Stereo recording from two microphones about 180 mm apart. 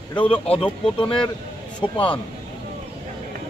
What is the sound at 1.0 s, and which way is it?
Speech, 5° left (ahead or behind).